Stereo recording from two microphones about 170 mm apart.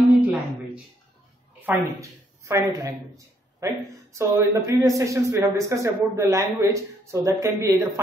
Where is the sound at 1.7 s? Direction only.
10° right (ahead or behind).